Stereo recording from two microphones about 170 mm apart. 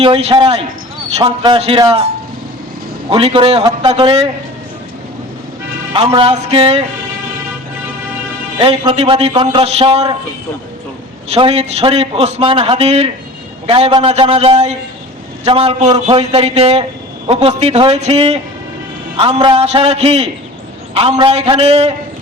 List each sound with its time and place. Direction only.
0.0 s a man's voice: 30° right (ahead or behind)
3.1 s a man's voice: 35° right (ahead or behind)
5.9 s a man's voice: 30° right (ahead or behind)
8.5 s a man's voice: 30° right (ahead or behind)
11.3 s a man's voice: 35° right (ahead or behind)